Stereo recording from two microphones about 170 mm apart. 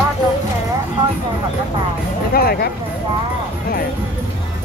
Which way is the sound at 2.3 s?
65° left (ahead or behind).